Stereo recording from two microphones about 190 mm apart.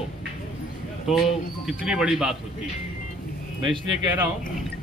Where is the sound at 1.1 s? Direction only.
Centre (ahead or behind).